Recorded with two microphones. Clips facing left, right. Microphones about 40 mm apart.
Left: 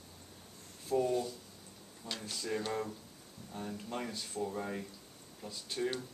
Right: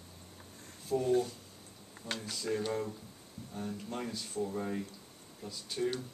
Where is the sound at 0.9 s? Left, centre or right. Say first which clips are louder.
Left 1 dB; centre.